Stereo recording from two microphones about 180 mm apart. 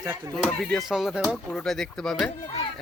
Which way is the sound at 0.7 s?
Centre (ahead or behind).